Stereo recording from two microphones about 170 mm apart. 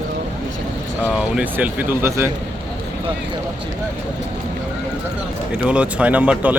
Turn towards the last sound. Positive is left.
turn(degrees=-10)  # may be behind; listen again after turning